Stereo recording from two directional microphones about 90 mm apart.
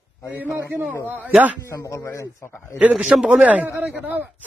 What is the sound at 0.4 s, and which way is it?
Speech, 20° right (ahead or behind).